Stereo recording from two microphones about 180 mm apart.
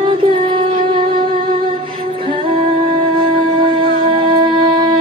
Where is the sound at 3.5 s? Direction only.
30° right (ahead or behind).